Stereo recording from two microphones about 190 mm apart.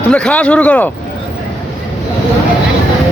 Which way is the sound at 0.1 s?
5° left (ahead or behind).